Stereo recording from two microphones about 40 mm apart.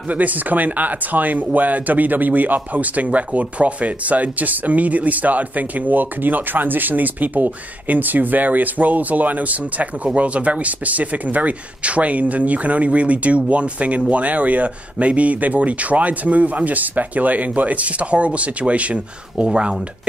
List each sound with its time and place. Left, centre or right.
0.1 s speech: right
19.4 s speech: right